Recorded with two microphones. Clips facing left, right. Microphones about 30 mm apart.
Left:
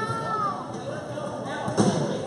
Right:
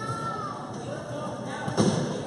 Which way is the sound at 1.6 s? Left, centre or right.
Centre.